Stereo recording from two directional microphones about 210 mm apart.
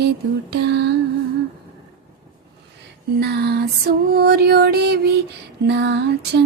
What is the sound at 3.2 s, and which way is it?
Female singing, 50° right (ahead or behind).